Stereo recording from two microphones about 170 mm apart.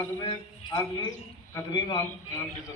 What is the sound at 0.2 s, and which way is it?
A man's voice, 25° left (ahead or behind).